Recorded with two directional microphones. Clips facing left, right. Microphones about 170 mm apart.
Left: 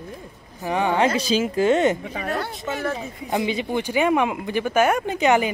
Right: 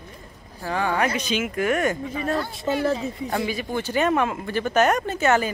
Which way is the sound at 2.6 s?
30° right (ahead or behind).